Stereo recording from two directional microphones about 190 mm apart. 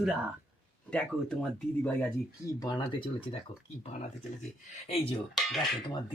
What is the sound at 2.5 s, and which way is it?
Speech, 20° left (ahead or behind).